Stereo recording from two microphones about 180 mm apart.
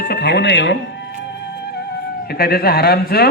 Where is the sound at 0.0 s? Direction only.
65° left (ahead or behind).